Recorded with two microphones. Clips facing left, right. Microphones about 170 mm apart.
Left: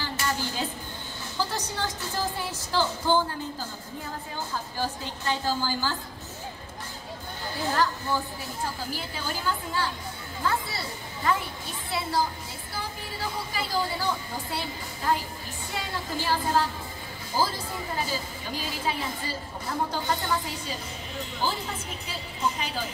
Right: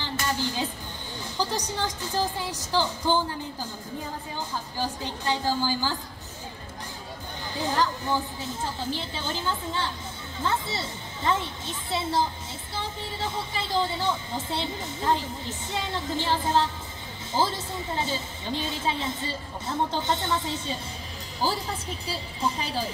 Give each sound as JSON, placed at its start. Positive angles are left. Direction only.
{"t": 0.0, "sound": "music", "side_deg": -20}
{"t": 1.4, "sound": "a woman's voice", "side_deg": -15}
{"t": 4.7, "sound": "a woman's voice", "side_deg": -15}
{"t": 7.5, "sound": "a woman's voice", "side_deg": -20}
{"t": 21.4, "sound": "a woman's voice", "side_deg": -35}